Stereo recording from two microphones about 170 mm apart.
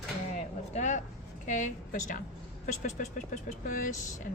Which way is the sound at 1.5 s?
45° left (ahead or behind).